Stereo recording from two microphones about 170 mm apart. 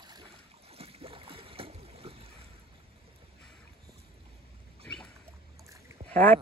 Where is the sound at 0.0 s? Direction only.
25° right (ahead or behind).